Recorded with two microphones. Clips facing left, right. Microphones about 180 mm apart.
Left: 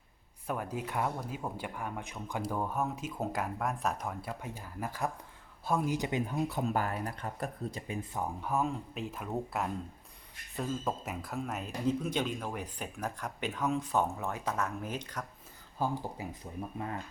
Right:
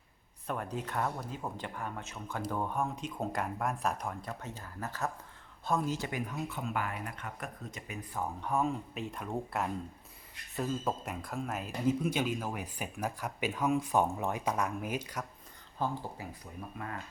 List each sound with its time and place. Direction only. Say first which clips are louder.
0.4 s speech: left 1 dB; 5° left (ahead or behind); by 7.9 s 30° left (ahead or behind)
8.4 s speech: right 1 dB; 5° left (ahead or behind)
15.8 s speech: left 2 dB; 15° left (ahead or behind)